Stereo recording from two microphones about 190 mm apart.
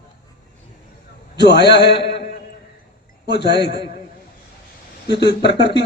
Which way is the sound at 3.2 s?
60° left (ahead or behind).